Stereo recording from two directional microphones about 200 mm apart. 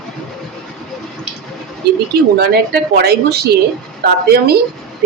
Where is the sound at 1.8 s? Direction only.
55° right (ahead or behind).